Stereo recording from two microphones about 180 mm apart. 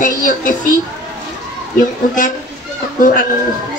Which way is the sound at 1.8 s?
50° left (ahead or behind).